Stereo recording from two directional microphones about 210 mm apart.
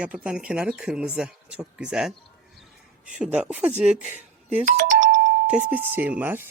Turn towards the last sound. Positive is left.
turn(degrees=-10)  # may be behind; listen again after turning